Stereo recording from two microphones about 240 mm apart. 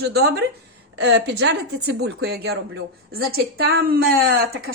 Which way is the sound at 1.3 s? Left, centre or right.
Right.